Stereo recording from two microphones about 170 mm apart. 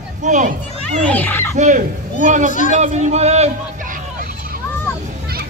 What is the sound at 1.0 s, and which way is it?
Speech, 10° left (ahead or behind).